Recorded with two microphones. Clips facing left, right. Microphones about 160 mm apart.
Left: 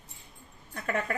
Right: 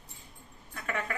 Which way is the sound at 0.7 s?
40° left (ahead or behind).